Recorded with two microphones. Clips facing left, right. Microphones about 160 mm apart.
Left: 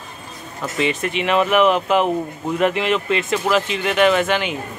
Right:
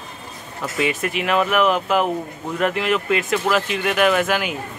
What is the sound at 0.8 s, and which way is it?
Speech, 5° right (ahead or behind).